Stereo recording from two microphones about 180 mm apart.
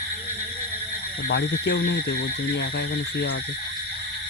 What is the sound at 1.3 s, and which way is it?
Speech, 75° left (ahead or behind).